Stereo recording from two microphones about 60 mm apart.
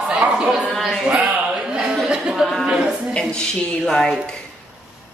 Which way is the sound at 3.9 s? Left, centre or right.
Centre.